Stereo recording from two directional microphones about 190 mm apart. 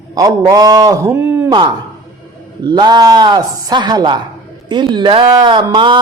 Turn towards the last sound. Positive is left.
turn(degrees=-25)  # may be behind; listen again after turning